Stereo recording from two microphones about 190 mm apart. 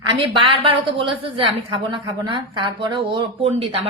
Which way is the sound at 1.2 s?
30° right (ahead or behind).